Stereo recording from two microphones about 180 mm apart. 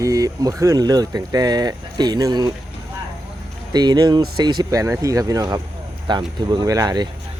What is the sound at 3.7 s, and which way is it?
Speech, 20° right (ahead or behind).